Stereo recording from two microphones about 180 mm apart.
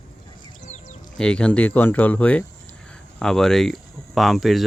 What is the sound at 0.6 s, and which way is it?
Music, 40° left (ahead or behind).